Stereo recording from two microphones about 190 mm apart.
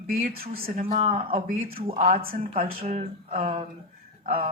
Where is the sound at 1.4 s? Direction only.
50° right (ahead or behind).